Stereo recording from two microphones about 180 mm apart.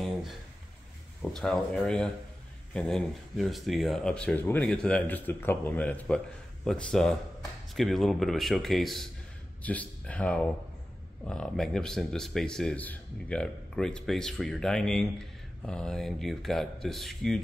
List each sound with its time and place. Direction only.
1.3 s speech: 5° left (ahead or behind)